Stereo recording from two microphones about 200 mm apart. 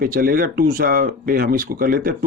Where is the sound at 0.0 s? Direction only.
45° right (ahead or behind).